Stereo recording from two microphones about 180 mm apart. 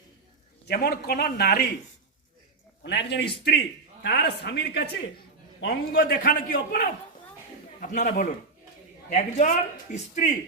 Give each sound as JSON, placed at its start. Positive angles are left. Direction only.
{"t": 0.7, "sound": "a man's voice", "side_deg": 60}
{"t": 2.8, "sound": "a man's voice", "side_deg": 75}